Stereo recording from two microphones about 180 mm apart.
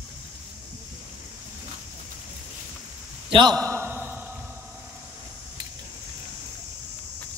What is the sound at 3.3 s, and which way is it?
Speech, 25° right (ahead or behind).